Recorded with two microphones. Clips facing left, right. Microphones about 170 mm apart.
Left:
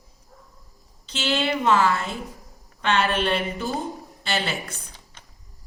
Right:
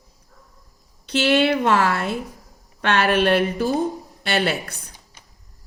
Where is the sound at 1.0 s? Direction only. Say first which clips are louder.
Right 7 dB; 65° right (ahead or behind).